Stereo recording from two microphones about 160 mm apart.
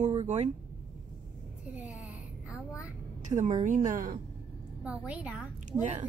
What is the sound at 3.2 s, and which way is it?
Speech, 45° right (ahead or behind).